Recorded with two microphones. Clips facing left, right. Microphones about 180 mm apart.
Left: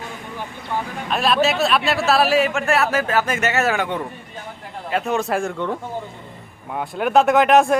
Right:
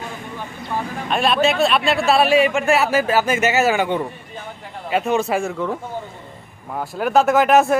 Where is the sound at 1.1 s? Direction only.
Centre (ahead or behind).